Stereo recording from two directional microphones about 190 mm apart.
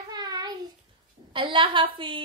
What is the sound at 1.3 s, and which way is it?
Speech, 25° right (ahead or behind).